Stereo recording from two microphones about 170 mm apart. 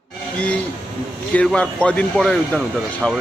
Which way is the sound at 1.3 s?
5° left (ahead or behind).